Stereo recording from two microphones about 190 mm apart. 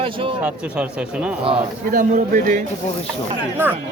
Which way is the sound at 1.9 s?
45° right (ahead or behind).